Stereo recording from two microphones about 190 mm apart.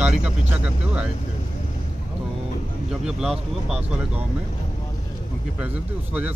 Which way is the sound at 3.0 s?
Centre (ahead or behind).